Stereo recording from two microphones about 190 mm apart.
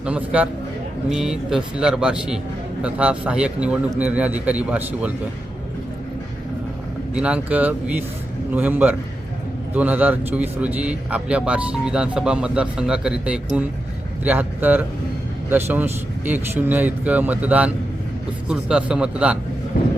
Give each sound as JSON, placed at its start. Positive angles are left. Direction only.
{"t": 0.0, "sound": "a man's voice", "side_deg": -5}
{"t": 7.2, "sound": "a man's voice", "side_deg": -5}
{"t": 19.7, "sound": "a sound", "side_deg": 50}